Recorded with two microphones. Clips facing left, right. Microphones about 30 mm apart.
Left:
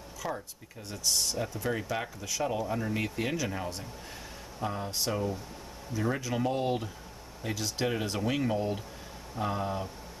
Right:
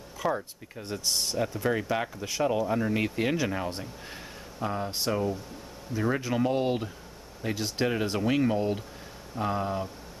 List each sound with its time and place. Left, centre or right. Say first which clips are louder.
0.2 s speech: right 7 dB; right
7.8 s speech: right 4 dB; centre